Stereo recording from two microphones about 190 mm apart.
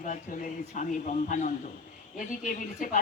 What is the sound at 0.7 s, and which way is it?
Speech, 40° left (ahead or behind).